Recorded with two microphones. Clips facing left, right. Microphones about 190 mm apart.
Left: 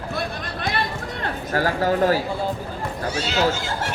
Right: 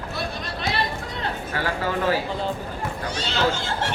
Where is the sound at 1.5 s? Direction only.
40° left (ahead or behind).